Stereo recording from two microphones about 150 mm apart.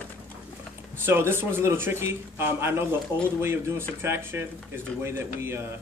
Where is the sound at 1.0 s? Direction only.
15° right (ahead or behind).